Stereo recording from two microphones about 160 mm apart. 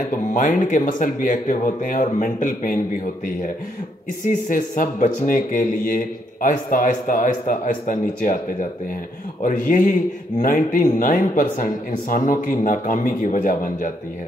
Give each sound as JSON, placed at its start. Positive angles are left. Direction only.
{"t": 0.3, "sound": "speech", "side_deg": 55}
{"t": 4.3, "sound": "speech", "side_deg": 55}